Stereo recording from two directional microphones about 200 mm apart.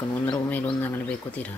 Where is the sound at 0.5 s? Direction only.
10° left (ahead or behind).